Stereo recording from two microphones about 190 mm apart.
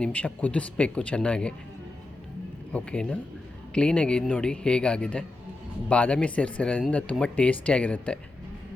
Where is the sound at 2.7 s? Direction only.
5° left (ahead or behind).